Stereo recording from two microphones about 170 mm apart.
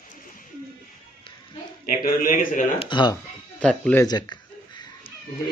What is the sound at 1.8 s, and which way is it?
Speech, 55° left (ahead or behind).